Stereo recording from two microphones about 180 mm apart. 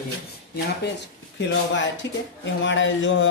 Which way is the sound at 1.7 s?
90° left.